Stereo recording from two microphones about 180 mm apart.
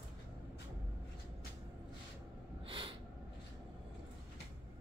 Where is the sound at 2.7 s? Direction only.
30° right (ahead or behind).